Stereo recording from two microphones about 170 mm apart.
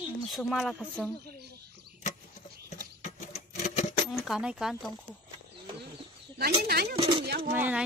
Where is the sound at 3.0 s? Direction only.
45° left (ahead or behind).